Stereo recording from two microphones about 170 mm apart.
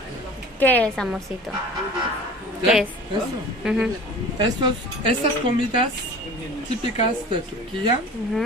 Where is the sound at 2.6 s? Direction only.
5° right (ahead or behind).